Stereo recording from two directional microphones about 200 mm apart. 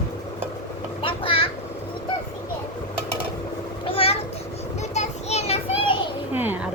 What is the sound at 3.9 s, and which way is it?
Children playing, 30° left (ahead or behind).